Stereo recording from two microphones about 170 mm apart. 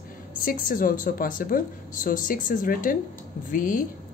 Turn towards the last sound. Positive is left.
turn(degrees=50)  # may be behind; listen again after turning